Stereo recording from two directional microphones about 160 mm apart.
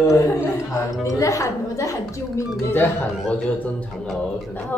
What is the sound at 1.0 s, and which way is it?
Speech, 20° left (ahead or behind).